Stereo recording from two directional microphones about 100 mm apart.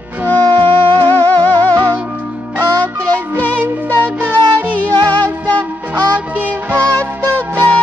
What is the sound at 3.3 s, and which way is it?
Music, 15° left (ahead or behind).